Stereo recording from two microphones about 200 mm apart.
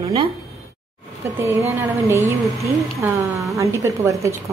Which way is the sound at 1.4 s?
15° right (ahead or behind).